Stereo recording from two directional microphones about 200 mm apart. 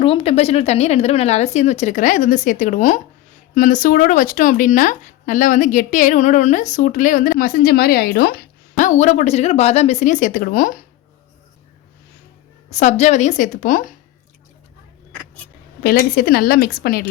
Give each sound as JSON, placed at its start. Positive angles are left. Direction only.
{"t": 0.0, "sound": "speech", "side_deg": 30}
{"t": 12.7, "sound": "speech", "side_deg": 35}
{"t": 15.8, "sound": "a woman's voice", "side_deg": 50}